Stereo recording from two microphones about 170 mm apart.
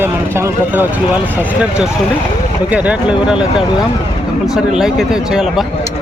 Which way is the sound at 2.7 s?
5° right (ahead or behind).